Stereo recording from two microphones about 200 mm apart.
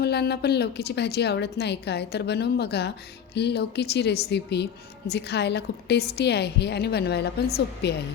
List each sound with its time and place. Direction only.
0.0 s speech: 55° left (ahead or behind)